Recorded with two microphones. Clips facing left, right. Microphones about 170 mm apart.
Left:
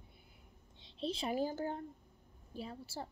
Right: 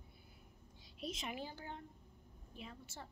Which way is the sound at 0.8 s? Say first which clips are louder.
Left 7 dB; 30° left (ahead or behind).